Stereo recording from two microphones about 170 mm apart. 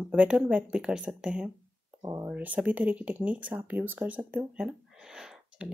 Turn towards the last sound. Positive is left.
turn(degrees=-5)  # may be behind; listen again after turning